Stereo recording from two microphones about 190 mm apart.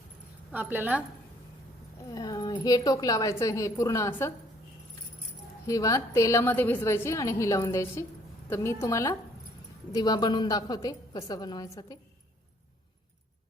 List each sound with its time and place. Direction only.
0.5 s a woman's voice: 10° right (ahead or behind)
2.1 s a woman's voice: 20° left (ahead or behind)
5.6 s a woman's voice: 15° left (ahead or behind)